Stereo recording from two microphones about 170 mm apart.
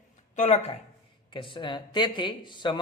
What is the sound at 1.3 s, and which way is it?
A man's voice, 30° left (ahead or behind).